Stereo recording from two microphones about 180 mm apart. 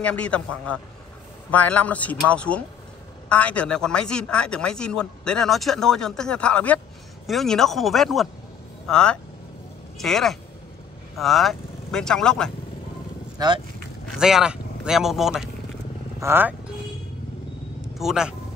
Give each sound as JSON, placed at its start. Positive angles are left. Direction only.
{"t": 0.0, "sound": "speech", "side_deg": 5}
{"t": 13.4, "sound": "speech", "side_deg": -20}
{"t": 14.1, "sound": "speech", "side_deg": -5}
{"t": 17.9, "sound": "speech", "side_deg": -5}